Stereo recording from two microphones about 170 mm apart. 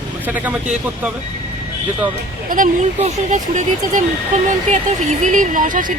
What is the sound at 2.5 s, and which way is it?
Speech, 55° right (ahead or behind).